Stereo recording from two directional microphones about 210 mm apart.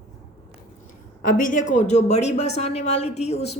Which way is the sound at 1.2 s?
40° left (ahead or behind).